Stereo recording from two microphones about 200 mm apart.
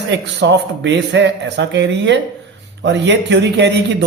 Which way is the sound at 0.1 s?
60° right (ahead or behind).